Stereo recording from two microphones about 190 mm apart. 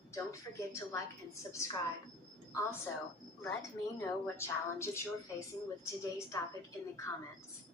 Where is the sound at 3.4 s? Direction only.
15° left (ahead or behind).